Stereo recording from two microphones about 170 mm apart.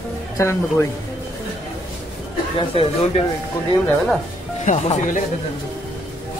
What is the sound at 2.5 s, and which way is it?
Speech, 35° left (ahead or behind).